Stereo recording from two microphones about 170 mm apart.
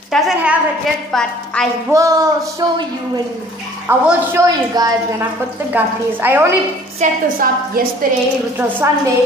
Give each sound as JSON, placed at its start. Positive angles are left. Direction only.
{"t": 0.1, "sound": "a woman's voice", "side_deg": -5}
{"t": 1.9, "sound": "music", "side_deg": -20}
{"t": 3.8, "sound": "a woman's voice", "side_deg": -15}
{"t": 7.0, "sound": "a woman's voice", "side_deg": -55}
{"t": 8.5, "sound": "a woman's voice", "side_deg": -15}